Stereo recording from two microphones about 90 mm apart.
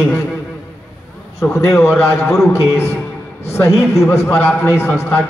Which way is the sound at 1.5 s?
30° left (ahead or behind).